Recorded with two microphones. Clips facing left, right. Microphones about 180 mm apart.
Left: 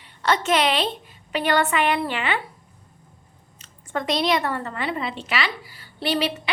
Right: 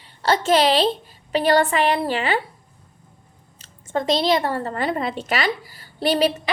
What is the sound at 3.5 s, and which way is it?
A woman's voice, 30° right (ahead or behind).